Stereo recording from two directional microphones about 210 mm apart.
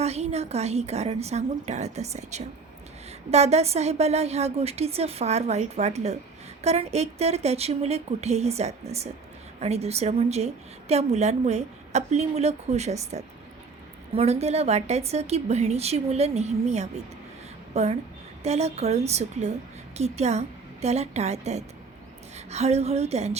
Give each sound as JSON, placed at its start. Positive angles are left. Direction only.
{"t": 0.0, "sound": "a woman's voice", "side_deg": -30}